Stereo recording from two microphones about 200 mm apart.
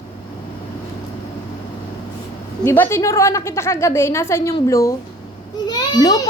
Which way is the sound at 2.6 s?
10° left (ahead or behind).